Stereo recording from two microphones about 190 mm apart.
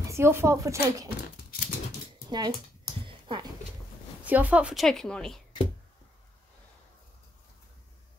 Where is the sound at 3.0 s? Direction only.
25° right (ahead or behind).